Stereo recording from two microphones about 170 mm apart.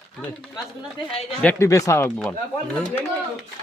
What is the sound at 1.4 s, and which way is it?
Speech, 15° left (ahead or behind).